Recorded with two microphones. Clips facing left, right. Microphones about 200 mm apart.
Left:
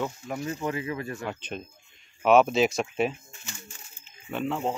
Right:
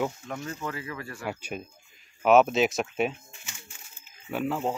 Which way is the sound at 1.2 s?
10° right (ahead or behind).